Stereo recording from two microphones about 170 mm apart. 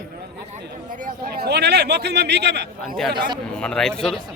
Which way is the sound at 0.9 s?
55° right (ahead or behind).